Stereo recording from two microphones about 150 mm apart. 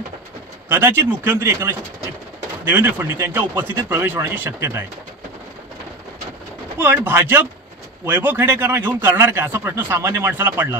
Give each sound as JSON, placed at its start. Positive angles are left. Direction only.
{"t": 0.7, "sound": "a man's voice", "side_deg": -15}
{"t": 2.7, "sound": "a man's voice", "side_deg": -15}
{"t": 6.8, "sound": "a man's voice", "side_deg": -15}